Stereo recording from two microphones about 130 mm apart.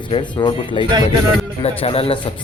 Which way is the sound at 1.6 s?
50° left (ahead or behind).